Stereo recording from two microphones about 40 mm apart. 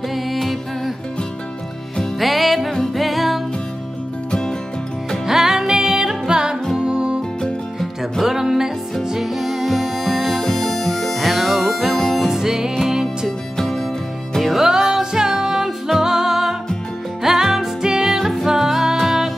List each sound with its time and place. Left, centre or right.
0.1 s music: centre
2.1 s music: centre
5.2 s music: centre
6.8 s music: centre
7.8 s music: centre
12.3 s music: centre
13.6 s music: centre